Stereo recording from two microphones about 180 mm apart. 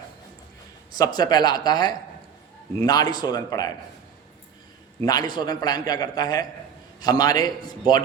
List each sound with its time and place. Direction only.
0.9 s speech: 20° left (ahead or behind)
5.0 s speech: 20° left (ahead or behind)